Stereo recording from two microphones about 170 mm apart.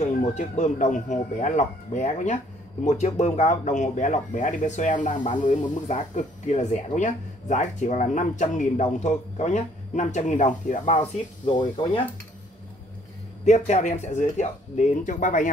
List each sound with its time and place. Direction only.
0.2 s speech: 45° left (ahead or behind)
5.1 s speech: 30° left (ahead or behind)
5.4 s speech: 45° left (ahead or behind)
11.4 s speech: 30° left (ahead or behind)
13.5 s speech: 40° left (ahead or behind)